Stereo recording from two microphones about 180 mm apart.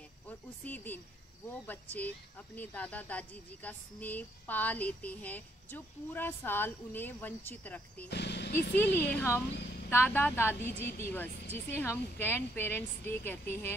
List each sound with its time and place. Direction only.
0.3 s speech: 10° left (ahead or behind)
8.1 s speech: 65° left (ahead or behind)
9.1 s speech: 15° left (ahead or behind)